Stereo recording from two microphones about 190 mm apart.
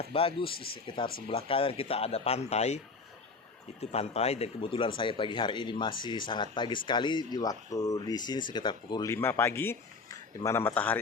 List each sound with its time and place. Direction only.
0.0 s speech: 30° left (ahead or behind); by 10.9 s 10° left (ahead or behind)